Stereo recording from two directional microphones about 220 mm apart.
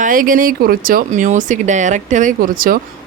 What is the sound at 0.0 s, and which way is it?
Speech, 40° right (ahead or behind).